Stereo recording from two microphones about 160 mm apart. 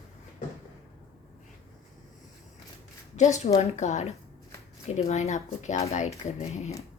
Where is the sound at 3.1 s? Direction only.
45° left (ahead or behind).